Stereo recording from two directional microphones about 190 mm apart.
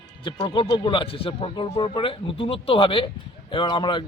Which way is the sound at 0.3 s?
25° left (ahead or behind).